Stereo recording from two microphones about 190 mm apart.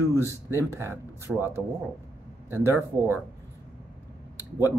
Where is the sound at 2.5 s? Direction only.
10° right (ahead or behind).